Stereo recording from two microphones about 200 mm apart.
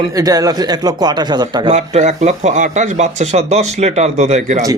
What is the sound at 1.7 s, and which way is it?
A man's voice, 35° right (ahead or behind).